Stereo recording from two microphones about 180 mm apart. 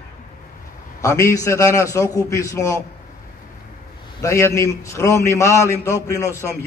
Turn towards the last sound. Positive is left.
turn(degrees=-15)  # may be behind; listen again after turning